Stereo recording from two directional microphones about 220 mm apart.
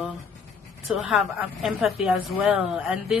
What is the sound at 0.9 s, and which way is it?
A woman's voice, 5° right (ahead or behind).